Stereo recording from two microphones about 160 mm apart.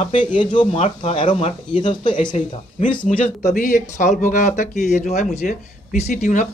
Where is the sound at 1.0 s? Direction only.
30° left (ahead or behind).